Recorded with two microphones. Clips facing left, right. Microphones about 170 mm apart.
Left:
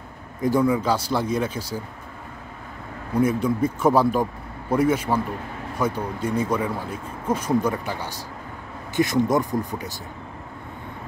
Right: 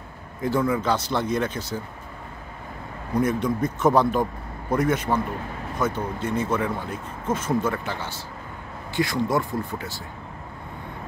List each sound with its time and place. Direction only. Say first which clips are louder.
0.4 s speech: left 3 dB; 15° left (ahead or behind)
3.2 s speech: left 2 dB; 10° left (ahead or behind)